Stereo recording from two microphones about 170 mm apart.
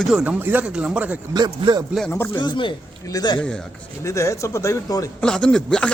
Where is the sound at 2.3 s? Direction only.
25° left (ahead or behind).